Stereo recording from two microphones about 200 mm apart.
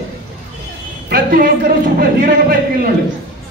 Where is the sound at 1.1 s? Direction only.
45° right (ahead or behind).